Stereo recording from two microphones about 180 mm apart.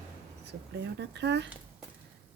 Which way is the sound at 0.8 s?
70° right (ahead or behind).